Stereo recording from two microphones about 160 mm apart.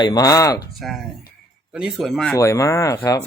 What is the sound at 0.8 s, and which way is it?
Speech, centre (ahead or behind).